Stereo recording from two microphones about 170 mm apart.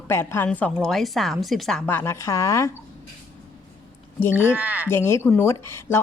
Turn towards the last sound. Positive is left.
turn(degrees=15)  # may be behind; listen again after turning